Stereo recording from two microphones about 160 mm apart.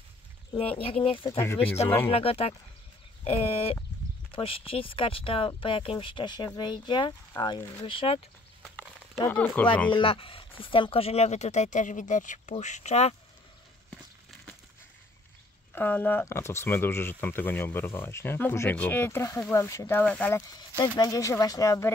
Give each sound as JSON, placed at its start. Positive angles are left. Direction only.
{"t": 0.5, "sound": "speech", "side_deg": 35}
{"t": 8.6, "sound": "a sound", "side_deg": 5}
{"t": 9.3, "sound": "speech", "side_deg": 10}
{"t": 9.8, "sound": "speech", "side_deg": 30}
{"t": 15.7, "sound": "speech", "side_deg": 10}